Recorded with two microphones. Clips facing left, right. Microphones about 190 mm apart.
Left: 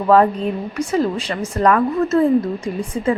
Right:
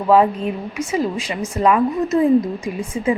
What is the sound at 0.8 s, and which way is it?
A woman's voice, 5° right (ahead or behind).